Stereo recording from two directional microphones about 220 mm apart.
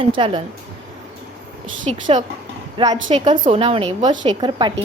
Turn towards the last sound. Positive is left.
turn(degrees=-20)  # may be behind; listen again after turning